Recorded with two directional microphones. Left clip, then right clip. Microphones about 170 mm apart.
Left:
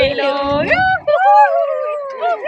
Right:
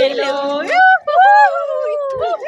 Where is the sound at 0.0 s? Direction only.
15° right (ahead or behind).